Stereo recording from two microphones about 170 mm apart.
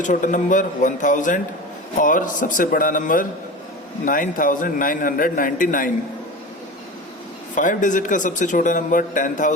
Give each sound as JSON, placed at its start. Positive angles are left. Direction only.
{"t": 0.0, "sound": "speech", "side_deg": 50}
{"t": 7.5, "sound": "speech", "side_deg": 50}